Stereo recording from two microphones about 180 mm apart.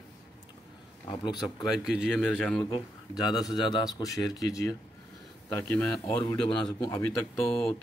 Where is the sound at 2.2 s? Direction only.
5° left (ahead or behind).